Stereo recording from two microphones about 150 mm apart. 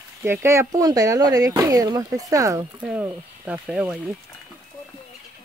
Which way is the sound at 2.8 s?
10° right (ahead or behind).